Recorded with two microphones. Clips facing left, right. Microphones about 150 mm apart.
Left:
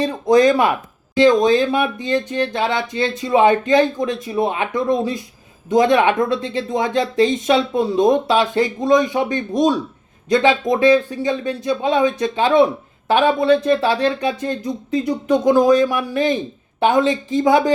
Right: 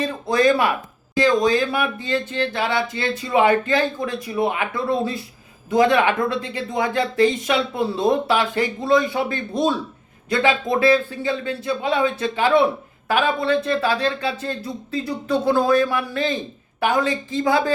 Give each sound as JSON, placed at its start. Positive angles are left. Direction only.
{"t": 0.0, "sound": "speech", "side_deg": 20}